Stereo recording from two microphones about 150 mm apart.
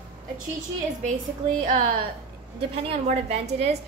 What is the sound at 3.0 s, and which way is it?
Speech, 45° right (ahead or behind).